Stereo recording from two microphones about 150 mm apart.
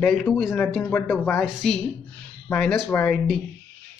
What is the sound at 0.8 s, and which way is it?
A man's voice, 10° left (ahead or behind).